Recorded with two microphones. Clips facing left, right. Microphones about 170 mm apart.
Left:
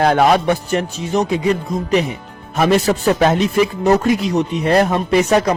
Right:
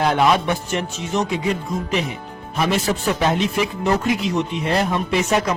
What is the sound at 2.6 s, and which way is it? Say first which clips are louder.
Speech: left 6 dB; 45° left (ahead or behind).